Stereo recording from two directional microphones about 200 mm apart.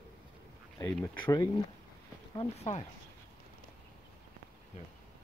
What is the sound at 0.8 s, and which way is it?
Speech, 5° left (ahead or behind).